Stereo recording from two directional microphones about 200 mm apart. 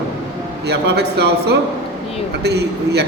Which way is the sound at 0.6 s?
55° right (ahead or behind).